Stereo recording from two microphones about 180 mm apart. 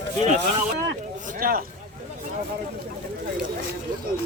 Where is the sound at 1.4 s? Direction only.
55° right (ahead or behind).